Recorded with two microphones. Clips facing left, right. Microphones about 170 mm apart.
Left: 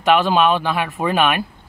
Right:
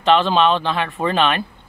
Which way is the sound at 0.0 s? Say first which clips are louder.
Even; 10° left (ahead or behind).